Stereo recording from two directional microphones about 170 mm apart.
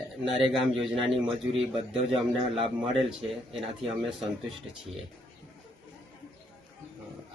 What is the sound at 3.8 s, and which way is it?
Speech, centre (ahead or behind).